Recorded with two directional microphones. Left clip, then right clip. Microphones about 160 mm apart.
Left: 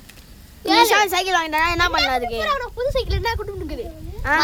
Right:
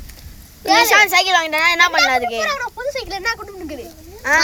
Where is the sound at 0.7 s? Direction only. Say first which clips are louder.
Right 3 dB; 5° left (ahead or behind).